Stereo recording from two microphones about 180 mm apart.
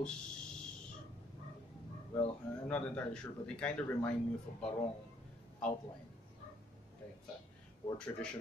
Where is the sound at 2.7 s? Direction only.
5° left (ahead or behind).